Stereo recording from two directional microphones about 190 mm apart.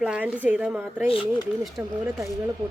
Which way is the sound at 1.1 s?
30° left (ahead or behind).